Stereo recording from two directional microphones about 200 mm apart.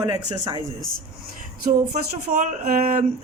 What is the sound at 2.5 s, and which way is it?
Speech, 40° right (ahead or behind).